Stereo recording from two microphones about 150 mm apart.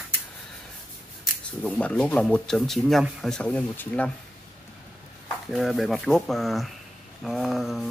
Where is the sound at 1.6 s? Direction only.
5° left (ahead or behind).